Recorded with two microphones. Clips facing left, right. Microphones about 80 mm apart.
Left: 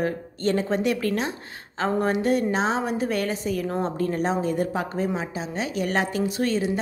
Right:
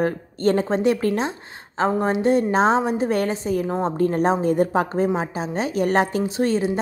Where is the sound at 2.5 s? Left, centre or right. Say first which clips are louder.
Right 6 dB; right.